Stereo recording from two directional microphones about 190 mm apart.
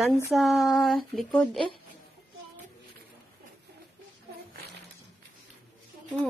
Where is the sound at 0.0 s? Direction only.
Centre (ahead or behind).